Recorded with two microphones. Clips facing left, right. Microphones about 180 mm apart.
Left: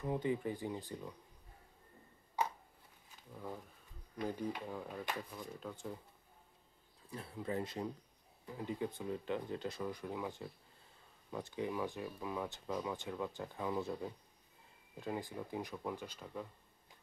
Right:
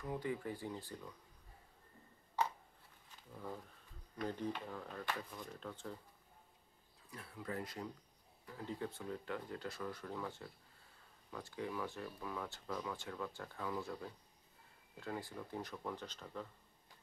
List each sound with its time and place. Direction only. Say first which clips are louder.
0.0 s speech: left 5 dB; 20° left (ahead or behind)
4.2 s speech: left 2 dB; 10° left (ahead or behind)
7.1 s speech: left 5 dB; 25° left (ahead or behind); by 16.4 s 10° left (ahead or behind)